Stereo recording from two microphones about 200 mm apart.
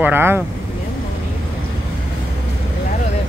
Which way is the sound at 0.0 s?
10° right (ahead or behind).